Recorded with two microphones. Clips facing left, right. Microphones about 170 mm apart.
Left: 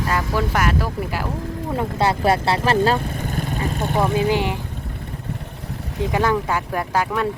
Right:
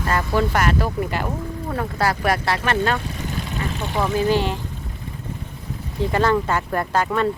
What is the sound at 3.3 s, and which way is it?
Vehicle, 45° left (ahead or behind).